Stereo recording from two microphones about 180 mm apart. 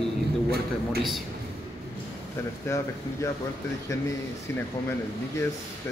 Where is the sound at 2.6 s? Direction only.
15° left (ahead or behind).